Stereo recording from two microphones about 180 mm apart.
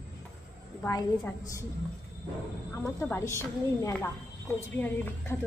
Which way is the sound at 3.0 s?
15° left (ahead or behind).